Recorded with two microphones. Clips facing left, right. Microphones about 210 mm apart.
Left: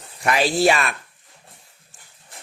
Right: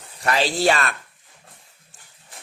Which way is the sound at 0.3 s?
10° left (ahead or behind).